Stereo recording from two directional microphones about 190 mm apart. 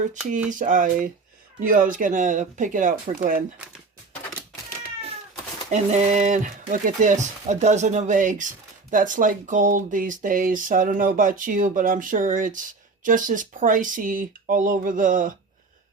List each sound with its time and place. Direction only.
0.5 s speech: 45° right (ahead or behind)
5.7 s speech: 35° right (ahead or behind)